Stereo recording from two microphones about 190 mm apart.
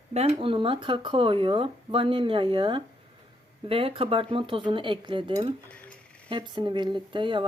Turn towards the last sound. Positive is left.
turn(degrees=-25)  # may be behind; listen again after turning